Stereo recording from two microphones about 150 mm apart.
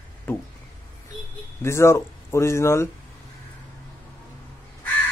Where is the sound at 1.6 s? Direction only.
20° left (ahead or behind).